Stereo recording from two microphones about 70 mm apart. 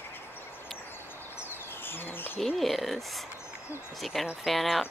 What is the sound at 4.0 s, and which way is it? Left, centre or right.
Speech, centre.